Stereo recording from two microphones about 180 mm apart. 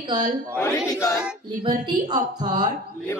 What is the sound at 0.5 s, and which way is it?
Speech, 15° left (ahead or behind).